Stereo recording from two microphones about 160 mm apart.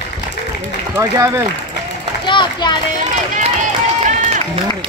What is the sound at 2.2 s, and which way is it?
Children playing, 30° left (ahead or behind).